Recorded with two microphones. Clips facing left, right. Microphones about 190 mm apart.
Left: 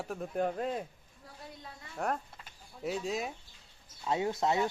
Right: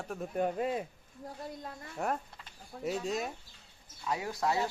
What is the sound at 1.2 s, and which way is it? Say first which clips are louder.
Speech: right 7 dB; 50° right (ahead or behind).